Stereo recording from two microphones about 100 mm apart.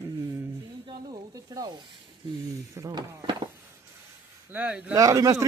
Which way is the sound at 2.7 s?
30° right (ahead or behind).